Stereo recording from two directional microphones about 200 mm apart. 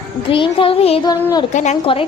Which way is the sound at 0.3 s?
25° left (ahead or behind).